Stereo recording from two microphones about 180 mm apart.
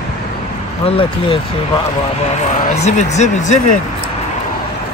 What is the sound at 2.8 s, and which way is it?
Speech, 40° left (ahead or behind).